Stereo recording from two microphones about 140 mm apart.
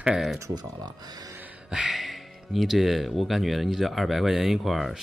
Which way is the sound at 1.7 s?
Centre (ahead or behind).